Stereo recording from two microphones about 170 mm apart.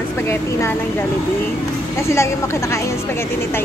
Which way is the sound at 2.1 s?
15° left (ahead or behind).